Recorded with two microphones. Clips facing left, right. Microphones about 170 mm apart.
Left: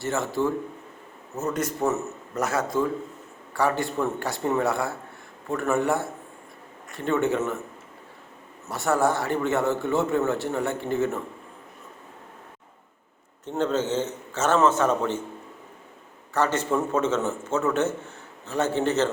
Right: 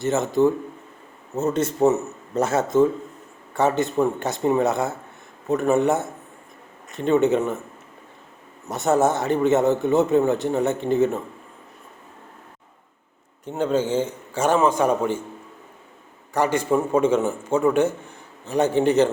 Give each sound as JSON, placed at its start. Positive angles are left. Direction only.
{"t": 0.0, "sound": "a man's voice", "side_deg": -20}
{"t": 8.6, "sound": "a man's voice", "side_deg": -20}
{"t": 13.4, "sound": "a man's voice", "side_deg": -10}
{"t": 16.3, "sound": "a man's voice", "side_deg": -15}